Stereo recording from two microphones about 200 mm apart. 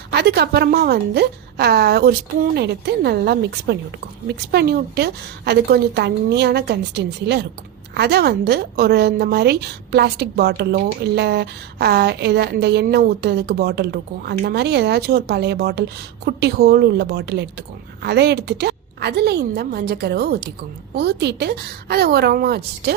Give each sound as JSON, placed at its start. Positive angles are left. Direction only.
{"t": 0.1, "sound": "a woman's voice", "side_deg": -55}